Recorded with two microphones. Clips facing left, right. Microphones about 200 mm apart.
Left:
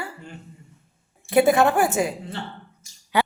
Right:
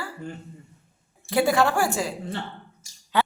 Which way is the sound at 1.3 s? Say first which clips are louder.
Left 4 dB; 20° left (ahead or behind).